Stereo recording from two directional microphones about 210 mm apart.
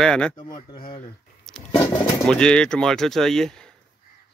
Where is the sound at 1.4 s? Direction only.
5° left (ahead or behind).